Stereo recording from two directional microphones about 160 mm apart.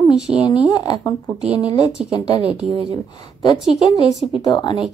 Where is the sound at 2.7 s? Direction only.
40° right (ahead or behind).